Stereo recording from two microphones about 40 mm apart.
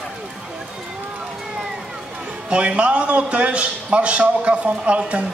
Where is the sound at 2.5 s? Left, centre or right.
Right.